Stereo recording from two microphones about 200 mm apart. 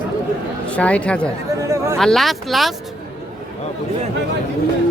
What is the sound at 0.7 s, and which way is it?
A man's voice, 5° left (ahead or behind).